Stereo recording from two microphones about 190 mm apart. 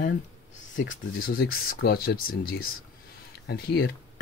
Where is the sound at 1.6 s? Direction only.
55° left (ahead or behind).